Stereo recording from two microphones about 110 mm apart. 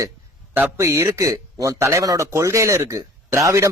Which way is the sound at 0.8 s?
25° right (ahead or behind).